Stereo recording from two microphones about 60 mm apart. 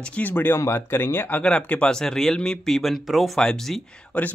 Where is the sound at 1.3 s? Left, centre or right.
Left.